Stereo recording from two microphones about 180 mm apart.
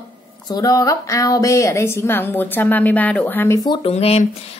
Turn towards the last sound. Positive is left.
turn(degrees=35)  # may be behind; listen again after turning